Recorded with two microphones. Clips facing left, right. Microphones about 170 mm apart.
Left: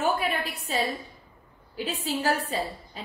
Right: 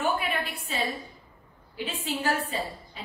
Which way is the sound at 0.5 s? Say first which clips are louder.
Left 3 dB; 40° left (ahead or behind).